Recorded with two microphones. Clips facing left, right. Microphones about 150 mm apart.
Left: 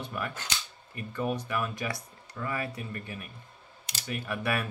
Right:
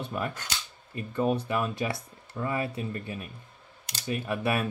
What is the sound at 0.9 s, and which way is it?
Speech, 25° right (ahead or behind).